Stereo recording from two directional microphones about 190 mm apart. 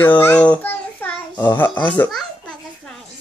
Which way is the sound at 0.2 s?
10° left (ahead or behind).